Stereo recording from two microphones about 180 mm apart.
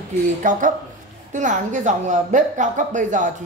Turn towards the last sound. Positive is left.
turn(degrees=-45)  # may be behind; listen again after turning